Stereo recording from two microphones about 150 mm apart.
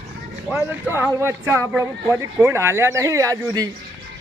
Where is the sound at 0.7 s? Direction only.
15° right (ahead or behind).